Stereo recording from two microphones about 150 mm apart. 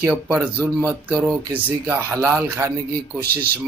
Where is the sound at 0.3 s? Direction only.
10° right (ahead or behind).